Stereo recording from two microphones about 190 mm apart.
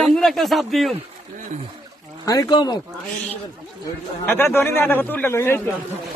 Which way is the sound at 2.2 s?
20° left (ahead or behind).